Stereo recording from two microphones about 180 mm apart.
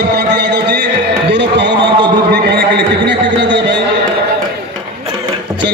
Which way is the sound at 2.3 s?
65° right (ahead or behind).